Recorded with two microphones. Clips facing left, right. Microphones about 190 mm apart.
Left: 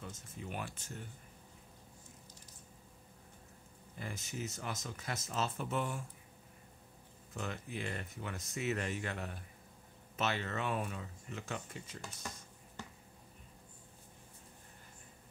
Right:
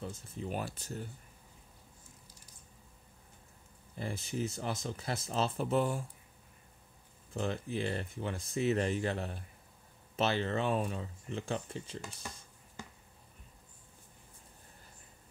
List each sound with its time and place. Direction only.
0.0 s speech: 30° right (ahead or behind)
3.9 s speech: 30° right (ahead or behind)
7.3 s speech: 30° right (ahead or behind)